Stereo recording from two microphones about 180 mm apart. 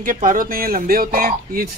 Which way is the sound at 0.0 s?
45° right (ahead or behind).